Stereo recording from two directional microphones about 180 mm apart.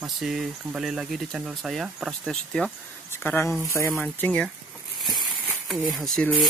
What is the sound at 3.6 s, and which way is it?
Speech, 15° left (ahead or behind).